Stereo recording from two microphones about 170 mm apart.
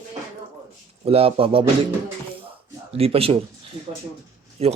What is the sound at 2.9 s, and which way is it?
Speech, 35° right (ahead or behind).